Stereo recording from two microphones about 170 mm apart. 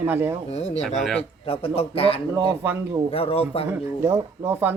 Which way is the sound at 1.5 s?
35° left (ahead or behind).